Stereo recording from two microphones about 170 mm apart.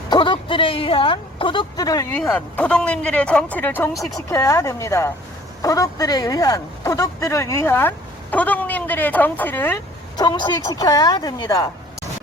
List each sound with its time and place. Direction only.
0.1 s speech: 30° left (ahead or behind)
2.1 s speech: 10° left (ahead or behind)
10.2 s a woman's voice: 25° left (ahead or behind)